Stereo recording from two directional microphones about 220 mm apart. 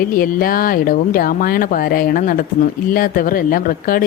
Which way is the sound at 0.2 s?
40° left (ahead or behind).